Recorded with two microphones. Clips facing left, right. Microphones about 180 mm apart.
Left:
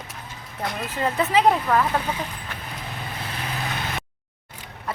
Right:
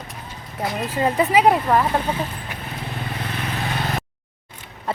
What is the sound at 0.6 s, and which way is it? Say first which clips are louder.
Speech: right 4 dB; 10° right (ahead or behind).